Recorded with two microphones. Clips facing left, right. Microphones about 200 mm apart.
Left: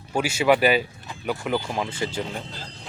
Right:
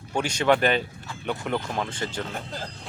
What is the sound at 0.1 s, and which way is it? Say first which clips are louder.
Speech: left 2 dB; 5° left (ahead or behind).